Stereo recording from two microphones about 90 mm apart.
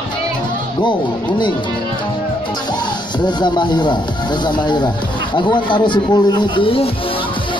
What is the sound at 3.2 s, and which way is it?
Speech, 55° left (ahead or behind).